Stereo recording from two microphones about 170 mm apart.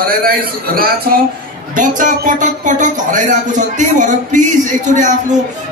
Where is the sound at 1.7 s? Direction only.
50° right (ahead or behind).